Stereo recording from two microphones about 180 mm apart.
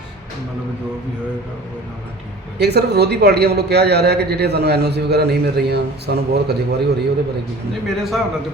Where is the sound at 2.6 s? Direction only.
65° right (ahead or behind).